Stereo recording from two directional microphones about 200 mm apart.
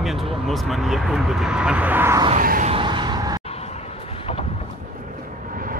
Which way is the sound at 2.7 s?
25° right (ahead or behind).